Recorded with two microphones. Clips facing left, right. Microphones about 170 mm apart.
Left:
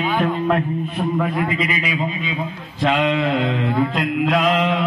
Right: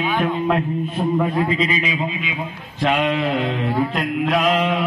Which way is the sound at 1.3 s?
25° right (ahead or behind).